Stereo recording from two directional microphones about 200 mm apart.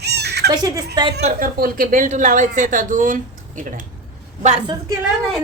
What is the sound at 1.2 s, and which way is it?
Speech, 45° right (ahead or behind).